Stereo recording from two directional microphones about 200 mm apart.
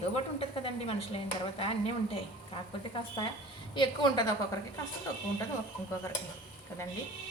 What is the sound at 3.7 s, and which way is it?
Speech, 20° left (ahead or behind).